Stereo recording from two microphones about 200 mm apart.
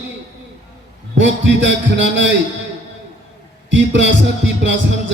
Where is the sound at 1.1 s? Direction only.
65° right (ahead or behind).